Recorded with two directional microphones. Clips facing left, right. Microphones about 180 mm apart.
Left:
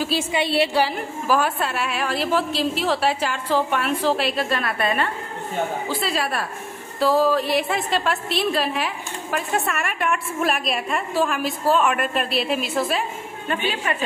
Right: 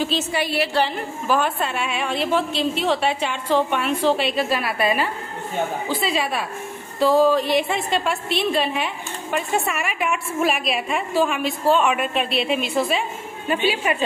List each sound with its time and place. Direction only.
0.3 s a woman's voice: 25° left (ahead or behind)
0.7 s a woman's voice: 5° left (ahead or behind)
13.5 s a woman's voice: 10° right (ahead or behind)